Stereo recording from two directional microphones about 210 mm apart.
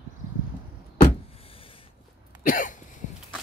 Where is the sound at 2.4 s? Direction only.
40° left (ahead or behind).